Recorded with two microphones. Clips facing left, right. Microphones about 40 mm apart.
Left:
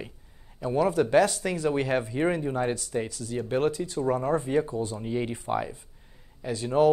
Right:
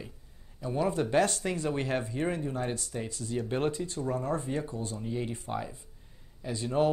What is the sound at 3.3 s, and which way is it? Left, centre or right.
Speech, centre.